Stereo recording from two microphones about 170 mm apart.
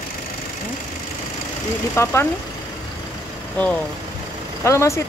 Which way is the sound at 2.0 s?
15° left (ahead or behind).